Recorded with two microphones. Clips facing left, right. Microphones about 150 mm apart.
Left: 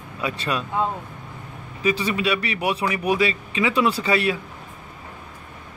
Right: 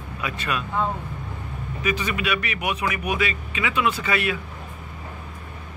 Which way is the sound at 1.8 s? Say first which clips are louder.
Left 4 dB; 30° left (ahead or behind).